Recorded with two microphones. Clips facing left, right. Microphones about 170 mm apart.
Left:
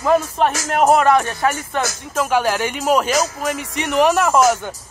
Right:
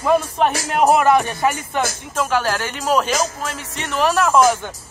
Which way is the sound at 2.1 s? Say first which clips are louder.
Left 2 dB; 10° left (ahead or behind).